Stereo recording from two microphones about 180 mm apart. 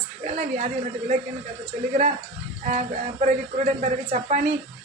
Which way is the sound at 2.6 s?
45° right (ahead or behind).